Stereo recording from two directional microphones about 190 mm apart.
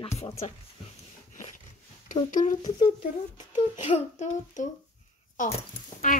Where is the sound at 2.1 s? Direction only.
40° left (ahead or behind).